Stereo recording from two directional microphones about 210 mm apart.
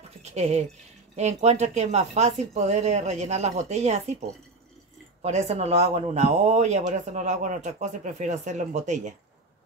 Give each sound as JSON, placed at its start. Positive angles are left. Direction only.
{"t": 0.2, "sound": "speech", "side_deg": -30}
{"t": 5.2, "sound": "speech", "side_deg": -30}